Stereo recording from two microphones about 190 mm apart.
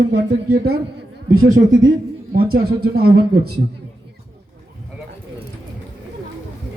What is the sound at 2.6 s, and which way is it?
Speech, 55° right (ahead or behind).